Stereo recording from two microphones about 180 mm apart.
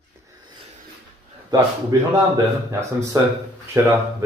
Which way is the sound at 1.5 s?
20° right (ahead or behind).